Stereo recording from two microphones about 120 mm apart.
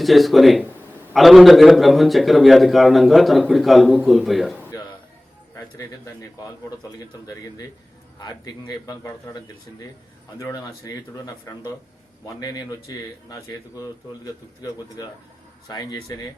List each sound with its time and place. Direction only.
0.0 s a man's voice: centre (ahead or behind)
5.5 s a man's voice: 30° left (ahead or behind)